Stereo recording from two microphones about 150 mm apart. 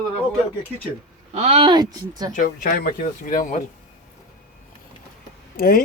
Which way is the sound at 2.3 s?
70° left (ahead or behind).